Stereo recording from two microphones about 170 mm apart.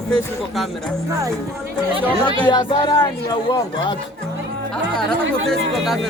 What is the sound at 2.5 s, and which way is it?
Speech, 25° left (ahead or behind).